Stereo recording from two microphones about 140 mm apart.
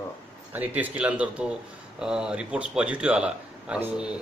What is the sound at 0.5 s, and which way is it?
A man's voice, 10° right (ahead or behind).